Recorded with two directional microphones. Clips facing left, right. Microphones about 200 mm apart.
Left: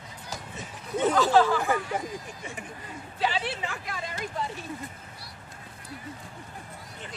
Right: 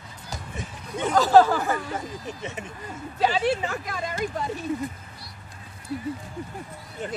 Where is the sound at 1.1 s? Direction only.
40° right (ahead or behind).